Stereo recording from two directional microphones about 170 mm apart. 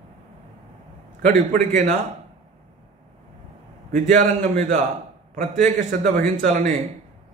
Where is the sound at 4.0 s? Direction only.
45° right (ahead or behind).